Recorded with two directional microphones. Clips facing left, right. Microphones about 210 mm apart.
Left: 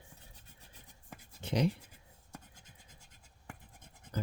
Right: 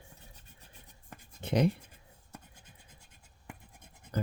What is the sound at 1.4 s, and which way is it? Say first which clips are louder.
Speech: right 4 dB; 55° right (ahead or behind).